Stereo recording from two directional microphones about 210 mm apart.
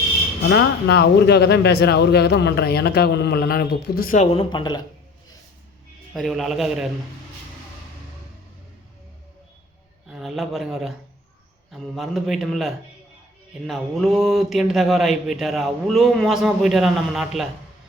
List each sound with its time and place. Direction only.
0.4 s speech: 55° left (ahead or behind); by 4.8 s 20° left (ahead or behind)
6.1 s speech: centre (ahead or behind)
10.1 s speech: centre (ahead or behind)